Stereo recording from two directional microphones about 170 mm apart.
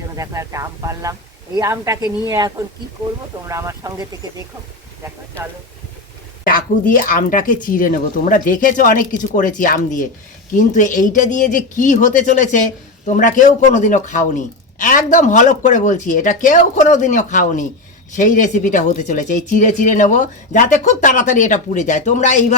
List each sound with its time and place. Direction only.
0.2 s a woman's voice: 20° right (ahead or behind)
6.4 s speech: 55° left (ahead or behind)